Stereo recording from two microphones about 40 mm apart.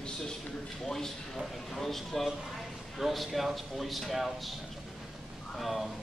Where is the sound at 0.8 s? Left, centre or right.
Centre.